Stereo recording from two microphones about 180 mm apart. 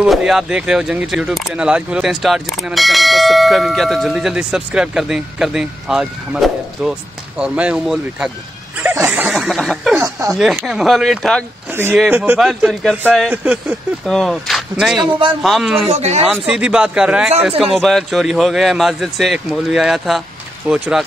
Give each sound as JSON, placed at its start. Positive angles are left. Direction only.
{"t": 0.0, "sound": "speech", "side_deg": -5}
{"t": 8.9, "sound": "snicker", "side_deg": -10}
{"t": 9.9, "sound": "speech", "side_deg": -20}
{"t": 10.3, "sound": "speech", "side_deg": 0}
{"t": 11.7, "sound": "speech", "side_deg": -10}
{"t": 15.0, "sound": "a man's voice", "side_deg": -30}
{"t": 15.4, "sound": "speech", "side_deg": 0}
{"t": 15.9, "sound": "speech", "side_deg": -35}
{"t": 16.3, "sound": "speech", "side_deg": -5}